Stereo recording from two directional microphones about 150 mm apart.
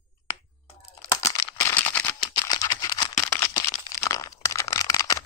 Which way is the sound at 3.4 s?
20° left (ahead or behind).